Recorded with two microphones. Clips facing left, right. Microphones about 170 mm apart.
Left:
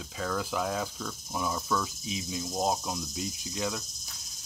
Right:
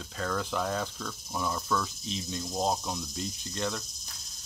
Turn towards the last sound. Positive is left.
turn(degrees=5)  # may be behind; listen again after turning